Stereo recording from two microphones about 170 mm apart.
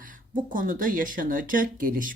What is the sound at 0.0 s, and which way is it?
Speech, 50° right (ahead or behind).